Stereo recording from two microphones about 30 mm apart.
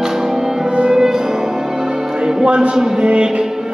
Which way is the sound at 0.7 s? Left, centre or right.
Right.